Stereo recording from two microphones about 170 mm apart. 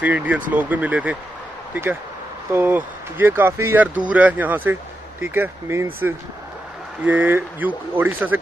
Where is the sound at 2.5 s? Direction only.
15° right (ahead or behind).